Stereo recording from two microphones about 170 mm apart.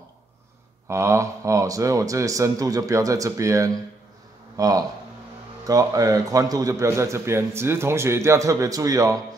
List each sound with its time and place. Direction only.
0.8 s a man's voice: 15° right (ahead or behind)